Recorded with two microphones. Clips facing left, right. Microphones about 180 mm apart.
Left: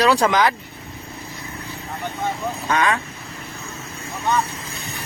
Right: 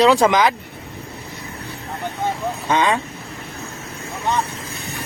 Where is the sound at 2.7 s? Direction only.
20° right (ahead or behind).